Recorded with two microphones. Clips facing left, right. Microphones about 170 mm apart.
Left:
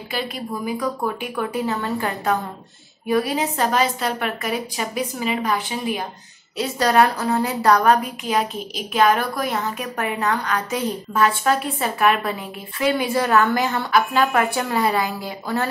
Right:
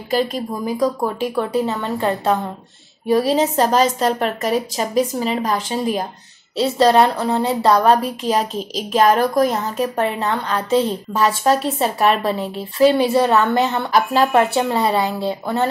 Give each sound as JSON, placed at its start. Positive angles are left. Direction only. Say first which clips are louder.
{"t": 0.1, "sound": "a woman's voice", "louder": "right 7 dB", "side_deg": -40}
{"t": 6.5, "sound": "a woman's voice", "louder": "right 5 dB", "side_deg": -30}
{"t": 13.9, "sound": "a woman's voice", "louder": "right 4 dB", "side_deg": -35}